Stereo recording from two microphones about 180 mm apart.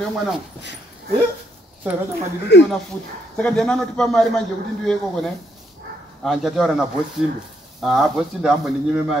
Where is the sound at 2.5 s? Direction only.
75° left (ahead or behind).